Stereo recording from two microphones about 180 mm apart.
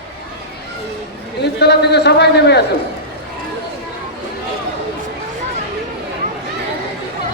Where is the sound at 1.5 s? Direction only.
65° left (ahead or behind).